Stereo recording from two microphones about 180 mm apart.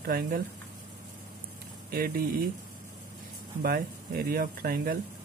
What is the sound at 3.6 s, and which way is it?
Speech, 55° right (ahead or behind).